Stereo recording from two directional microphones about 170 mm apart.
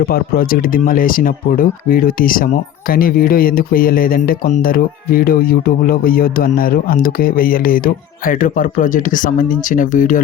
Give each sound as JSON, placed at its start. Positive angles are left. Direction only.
{"t": 0.0, "sound": "speech", "side_deg": 60}